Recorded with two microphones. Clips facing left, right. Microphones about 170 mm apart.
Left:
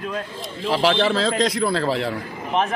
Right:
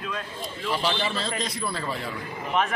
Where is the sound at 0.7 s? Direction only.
90° left.